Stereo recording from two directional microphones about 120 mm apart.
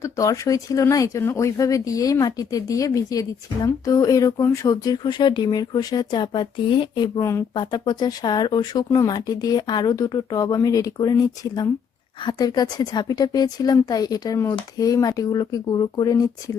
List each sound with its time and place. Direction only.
0.0 s speech: 25° left (ahead or behind)
7.2 s speech: 25° left (ahead or behind)
7.5 s speech: 40° left (ahead or behind)